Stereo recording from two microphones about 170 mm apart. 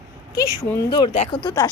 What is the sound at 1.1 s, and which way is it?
Speech, 35° left (ahead or behind).